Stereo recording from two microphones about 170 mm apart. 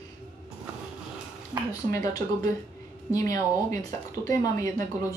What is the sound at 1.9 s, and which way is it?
Speech, 20° left (ahead or behind).